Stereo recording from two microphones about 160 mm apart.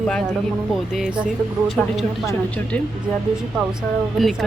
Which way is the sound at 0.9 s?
Centre (ahead or behind).